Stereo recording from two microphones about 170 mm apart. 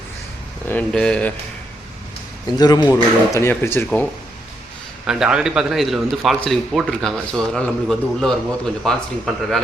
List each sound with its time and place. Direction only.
0.7 s speech: 5° left (ahead or behind)
2.6 s speech: 25° left (ahead or behind)
5.0 s speech: 5° right (ahead or behind)